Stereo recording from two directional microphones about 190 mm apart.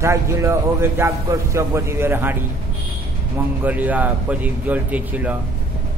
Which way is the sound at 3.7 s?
10° right (ahead or behind).